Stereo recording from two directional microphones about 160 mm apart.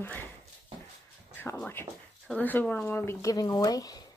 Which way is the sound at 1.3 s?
10° left (ahead or behind).